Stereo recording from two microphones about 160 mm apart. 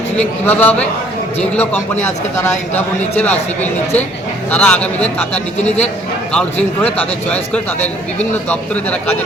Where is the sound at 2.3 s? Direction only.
10° left (ahead or behind).